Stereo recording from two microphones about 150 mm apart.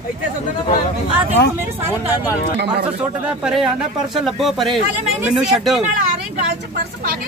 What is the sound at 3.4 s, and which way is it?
Speech, centre (ahead or behind).